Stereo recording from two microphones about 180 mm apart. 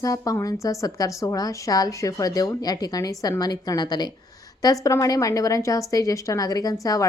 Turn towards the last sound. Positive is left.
turn(degrees=20)  # may be behind; listen again after turning